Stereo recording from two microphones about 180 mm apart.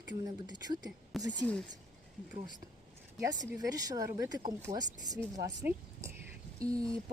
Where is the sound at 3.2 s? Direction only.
20° right (ahead or behind).